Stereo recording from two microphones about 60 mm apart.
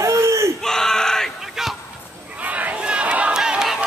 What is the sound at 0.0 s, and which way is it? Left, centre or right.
Crowd, right.